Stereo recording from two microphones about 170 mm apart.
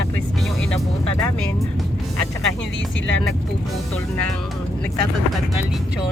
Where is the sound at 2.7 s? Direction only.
90° left.